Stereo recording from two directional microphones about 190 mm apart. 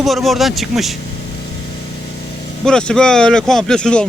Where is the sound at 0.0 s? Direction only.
Centre (ahead or behind).